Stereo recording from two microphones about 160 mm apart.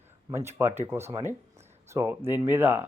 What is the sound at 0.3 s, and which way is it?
Speech, 15° right (ahead or behind).